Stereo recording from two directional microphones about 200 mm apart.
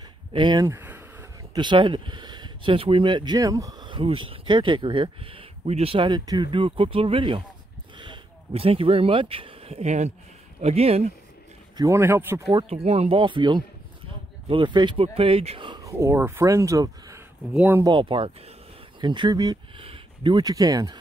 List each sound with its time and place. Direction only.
0.3 s speech: 20° right (ahead or behind)
1.5 s speech: 25° right (ahead or behind)
11.7 s speech: 15° right (ahead or behind)
12.4 s speech: 30° right (ahead or behind); by 17.8 s 10° right (ahead or behind)
17.8 s speech: 25° right (ahead or behind)